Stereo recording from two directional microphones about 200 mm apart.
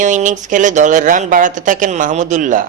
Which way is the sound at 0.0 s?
40° right (ahead or behind).